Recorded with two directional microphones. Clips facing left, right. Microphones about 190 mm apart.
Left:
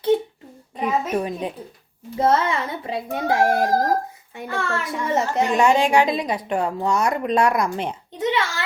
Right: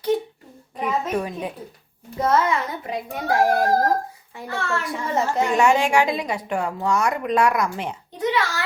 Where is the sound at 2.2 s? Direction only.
30° left (ahead or behind).